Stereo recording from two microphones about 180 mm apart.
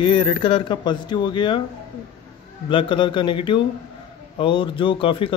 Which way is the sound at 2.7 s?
25° left (ahead or behind).